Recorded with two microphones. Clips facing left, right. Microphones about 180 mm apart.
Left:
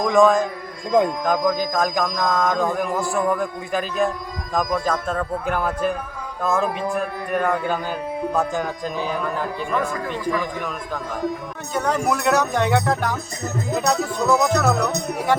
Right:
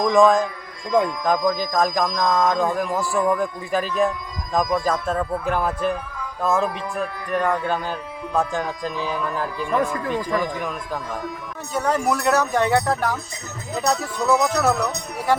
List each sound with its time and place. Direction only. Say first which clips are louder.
0.0 s speech: even; centre (ahead or behind)
11.7 s speech: even; 5° right (ahead or behind)